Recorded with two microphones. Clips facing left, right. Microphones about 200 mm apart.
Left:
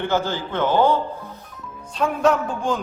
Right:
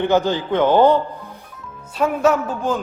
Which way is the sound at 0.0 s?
15° right (ahead or behind).